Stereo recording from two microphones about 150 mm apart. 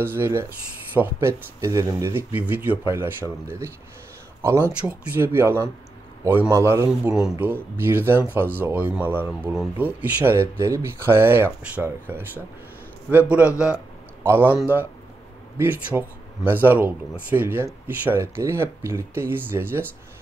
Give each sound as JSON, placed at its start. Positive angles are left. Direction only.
{"t": 0.0, "sound": "speech", "side_deg": -15}
{"t": 7.2, "sound": "speech", "side_deg": -5}
{"t": 14.2, "sound": "speech", "side_deg": -15}